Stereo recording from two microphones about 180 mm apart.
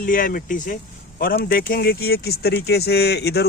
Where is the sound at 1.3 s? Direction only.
60° left (ahead or behind).